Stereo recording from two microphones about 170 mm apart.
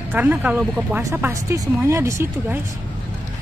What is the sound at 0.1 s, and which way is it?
Speech, 10° right (ahead or behind).